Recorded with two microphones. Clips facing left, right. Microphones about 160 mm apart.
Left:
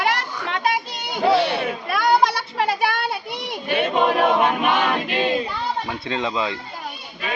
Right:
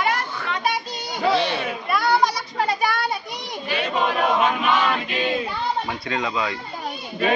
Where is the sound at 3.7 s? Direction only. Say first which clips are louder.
Left 4 dB; 55° left (ahead or behind).